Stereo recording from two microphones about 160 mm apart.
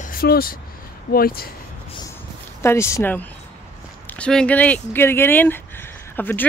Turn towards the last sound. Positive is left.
turn(degrees=10)  # may be behind; listen again after turning